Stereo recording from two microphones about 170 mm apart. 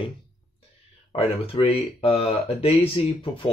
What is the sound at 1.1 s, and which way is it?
Speech, 30° left (ahead or behind).